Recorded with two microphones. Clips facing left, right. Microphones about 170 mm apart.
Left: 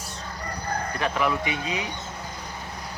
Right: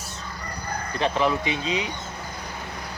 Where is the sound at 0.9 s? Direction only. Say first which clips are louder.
Right 4 dB; 25° right (ahead or behind).